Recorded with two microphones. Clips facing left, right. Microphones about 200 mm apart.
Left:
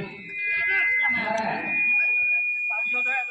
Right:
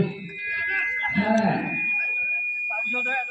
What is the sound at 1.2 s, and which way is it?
Buzzer, 40° right (ahead or behind).